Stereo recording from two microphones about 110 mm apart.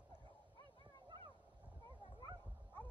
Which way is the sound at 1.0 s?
45° right (ahead or behind).